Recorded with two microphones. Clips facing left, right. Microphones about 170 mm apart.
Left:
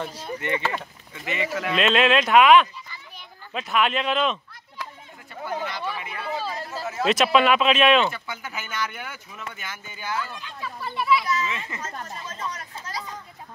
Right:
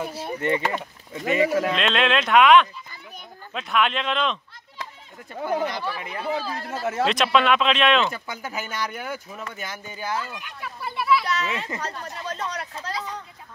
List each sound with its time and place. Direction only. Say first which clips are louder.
0.0 s speech: right 2 dB; 10° right (ahead or behind)
1.1 s speech: right 7 dB; 40° right (ahead or behind)
1.8 s speech: left 2 dB; 5° left (ahead or behind)
5.4 s speech: right 4 dB; 45° right (ahead or behind)
6.3 s speech: left 1 dB; 60° right (ahead or behind)
7.1 s speech: left 3 dB; 5° left (ahead or behind)
8.1 s speech: right 2 dB; 40° right (ahead or behind)
10.9 s speech: right 1 dB; 5° right (ahead or behind)
11.2 s speech: right 1 dB; 70° right (ahead or behind)